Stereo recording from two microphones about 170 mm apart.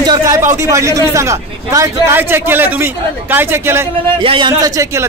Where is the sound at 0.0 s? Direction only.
20° right (ahead or behind).